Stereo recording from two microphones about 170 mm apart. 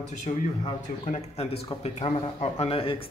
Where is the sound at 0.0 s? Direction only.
45° left (ahead or behind).